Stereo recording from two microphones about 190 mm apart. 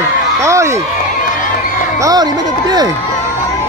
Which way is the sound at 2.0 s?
20° right (ahead or behind).